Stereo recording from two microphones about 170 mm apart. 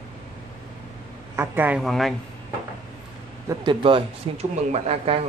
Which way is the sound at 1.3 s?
15° right (ahead or behind).